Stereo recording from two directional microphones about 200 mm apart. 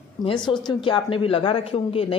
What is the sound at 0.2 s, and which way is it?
Speech, 25° left (ahead or behind).